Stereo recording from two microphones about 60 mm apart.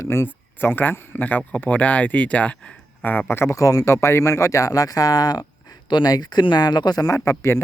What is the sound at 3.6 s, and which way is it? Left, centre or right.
Speech, left.